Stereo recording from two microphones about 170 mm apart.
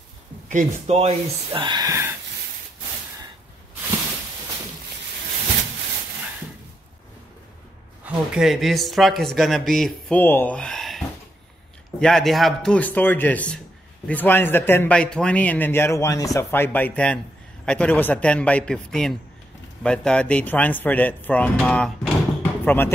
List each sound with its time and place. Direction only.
0.5 s speech: 45° right (ahead or behind); by 2.0 s 20° right (ahead or behind)
8.0 s a man's voice: 5° right (ahead or behind); by 22.9 s 10° left (ahead or behind)